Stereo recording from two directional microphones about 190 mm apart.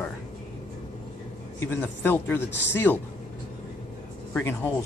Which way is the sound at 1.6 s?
10° left (ahead or behind).